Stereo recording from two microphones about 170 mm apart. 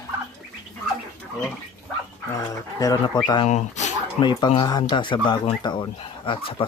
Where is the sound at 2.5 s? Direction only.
20° left (ahead or behind).